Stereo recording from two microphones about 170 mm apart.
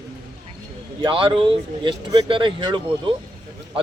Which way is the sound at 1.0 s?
30° right (ahead or behind).